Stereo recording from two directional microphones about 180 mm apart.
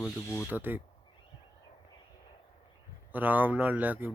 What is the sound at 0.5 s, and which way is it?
Speech, 10° right (ahead or behind).